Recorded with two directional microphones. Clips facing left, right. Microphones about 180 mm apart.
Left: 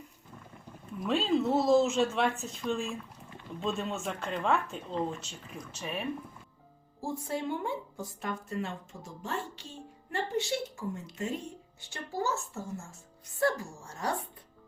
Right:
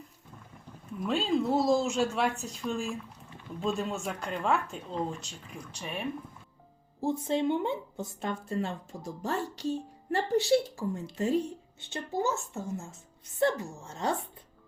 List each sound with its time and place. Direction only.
1.0 s speech: centre (ahead or behind)
7.0 s speech: 20° right (ahead or behind)
11.8 s speech: 20° right (ahead or behind)